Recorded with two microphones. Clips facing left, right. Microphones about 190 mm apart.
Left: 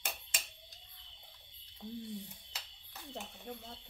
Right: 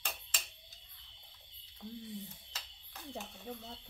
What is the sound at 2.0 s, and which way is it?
Speech, centre (ahead or behind).